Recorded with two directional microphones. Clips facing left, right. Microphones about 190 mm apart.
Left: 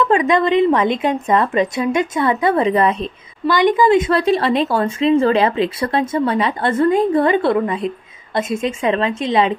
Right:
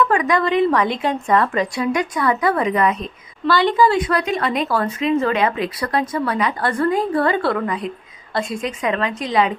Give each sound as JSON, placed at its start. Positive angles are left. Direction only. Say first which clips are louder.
{"t": 0.0, "sound": "a woman's voice", "louder": "left 3 dB", "side_deg": 25}
{"t": 3.4, "sound": "a woman's voice", "louder": "left 2 dB", "side_deg": 15}